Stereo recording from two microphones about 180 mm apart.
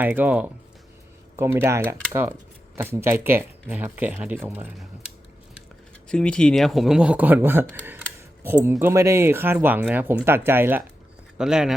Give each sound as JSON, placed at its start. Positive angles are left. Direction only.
{"t": 0.0, "sound": "speech", "side_deg": -10}
{"t": 6.1, "sound": "speech", "side_deg": 5}